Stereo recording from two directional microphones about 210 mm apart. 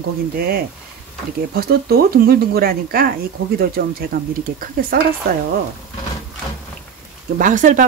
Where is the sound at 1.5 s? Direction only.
45° right (ahead or behind).